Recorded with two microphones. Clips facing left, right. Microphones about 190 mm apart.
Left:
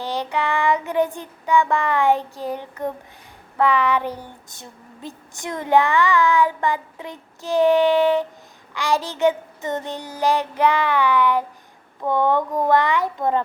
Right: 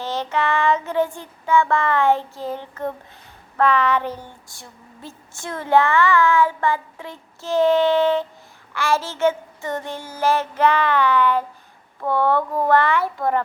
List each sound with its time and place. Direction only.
0.0 s child singing: 15° left (ahead or behind)
3.6 s female singing: 10° left (ahead or behind)